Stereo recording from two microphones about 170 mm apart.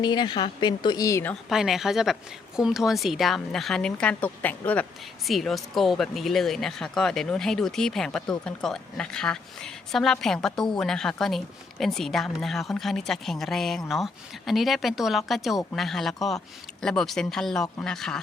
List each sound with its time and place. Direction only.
0.0 s speech: 25° left (ahead or behind)
1.5 s a woman's voice: centre (ahead or behind)